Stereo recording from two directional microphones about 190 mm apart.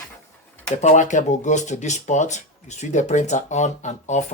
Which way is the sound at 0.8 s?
40° left (ahead or behind).